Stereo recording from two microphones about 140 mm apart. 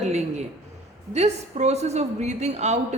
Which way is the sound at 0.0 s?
50° right (ahead or behind).